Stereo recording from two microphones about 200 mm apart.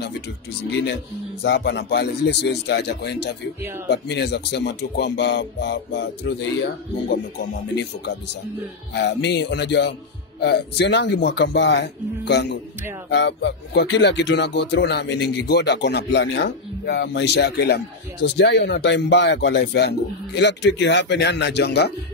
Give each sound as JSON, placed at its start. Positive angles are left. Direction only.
{"t": 1.4, "sound": "speech", "side_deg": 60}